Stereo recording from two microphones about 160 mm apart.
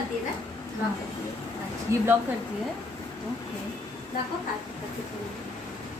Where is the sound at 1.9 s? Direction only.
15° right (ahead or behind).